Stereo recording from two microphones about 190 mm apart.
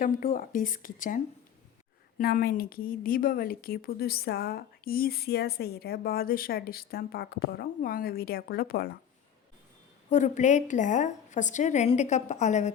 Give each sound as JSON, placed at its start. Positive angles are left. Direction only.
{"t": 0.0, "sound": "a woman's voice", "side_deg": 45}
{"t": 10.1, "sound": "a woman's voice", "side_deg": 40}